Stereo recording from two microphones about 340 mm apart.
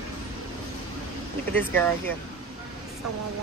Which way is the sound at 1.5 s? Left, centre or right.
Centre.